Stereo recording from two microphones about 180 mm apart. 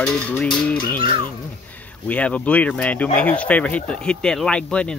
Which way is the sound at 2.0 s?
5° left (ahead or behind).